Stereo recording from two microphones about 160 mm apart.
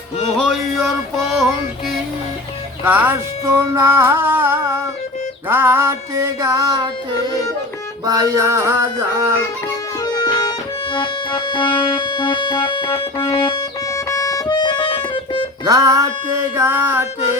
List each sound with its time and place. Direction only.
0.3 s music: centre (ahead or behind)
2.8 s music: 10° right (ahead or behind)
5.5 s a sound: 15° right (ahead or behind)
8.0 s music: 20° right (ahead or behind)
10.0 s music: 25° left (ahead or behind)
15.6 s music: 20° right (ahead or behind)
16.6 s a sound: 15° right (ahead or behind)